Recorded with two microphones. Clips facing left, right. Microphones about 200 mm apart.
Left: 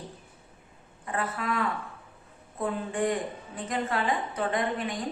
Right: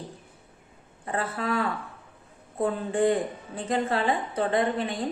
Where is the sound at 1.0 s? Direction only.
30° right (ahead or behind).